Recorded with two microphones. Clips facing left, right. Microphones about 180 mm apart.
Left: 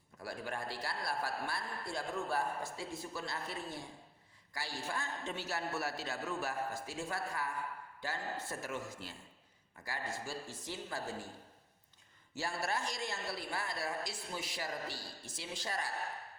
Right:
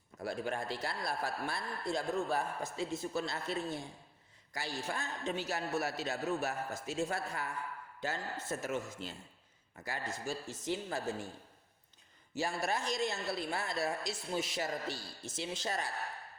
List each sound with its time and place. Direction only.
0.2 s a man's voice: 25° right (ahead or behind)
12.3 s a man's voice: 15° right (ahead or behind)